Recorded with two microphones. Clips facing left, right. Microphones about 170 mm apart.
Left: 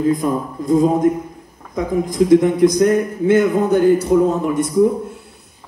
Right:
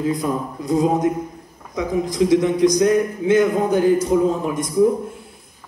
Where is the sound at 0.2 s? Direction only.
50° left (ahead or behind).